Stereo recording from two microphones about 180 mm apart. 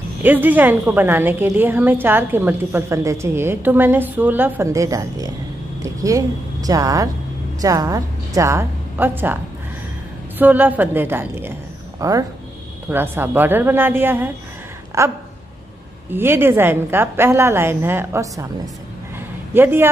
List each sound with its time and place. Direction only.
0.2 s a woman's voice: 10° right (ahead or behind)
10.4 s a woman's voice: 10° right (ahead or behind)
19.5 s a woman's voice: 10° right (ahead or behind)